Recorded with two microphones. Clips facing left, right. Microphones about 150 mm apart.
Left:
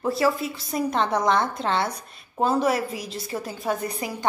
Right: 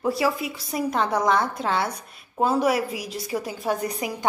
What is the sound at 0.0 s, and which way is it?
A woman's voice, 10° right (ahead or behind).